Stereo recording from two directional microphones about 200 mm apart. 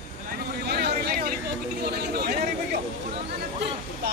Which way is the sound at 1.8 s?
55° right (ahead or behind).